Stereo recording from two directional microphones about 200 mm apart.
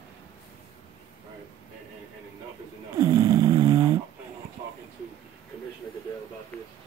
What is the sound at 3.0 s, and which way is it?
Snoring, 20° right (ahead or behind).